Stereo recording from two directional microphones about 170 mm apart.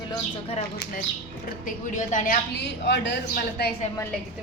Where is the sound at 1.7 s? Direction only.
50° left (ahead or behind).